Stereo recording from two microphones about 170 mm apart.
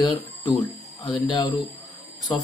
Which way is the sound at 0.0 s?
20° left (ahead or behind).